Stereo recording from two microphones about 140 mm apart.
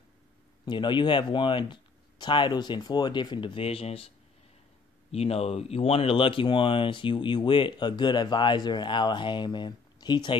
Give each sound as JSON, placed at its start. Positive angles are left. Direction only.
{"t": 0.7, "sound": "speech", "side_deg": 35}
{"t": 5.1, "sound": "speech", "side_deg": 45}